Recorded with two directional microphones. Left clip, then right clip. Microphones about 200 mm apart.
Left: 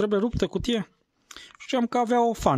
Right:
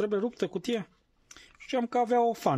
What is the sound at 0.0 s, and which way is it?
Speech, 35° left (ahead or behind).